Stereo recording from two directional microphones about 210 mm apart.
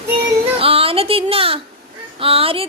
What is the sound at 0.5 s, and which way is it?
Speech, 25° right (ahead or behind).